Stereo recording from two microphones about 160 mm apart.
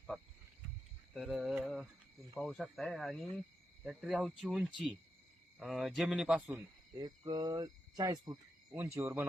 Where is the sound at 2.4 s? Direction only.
Centre (ahead or behind).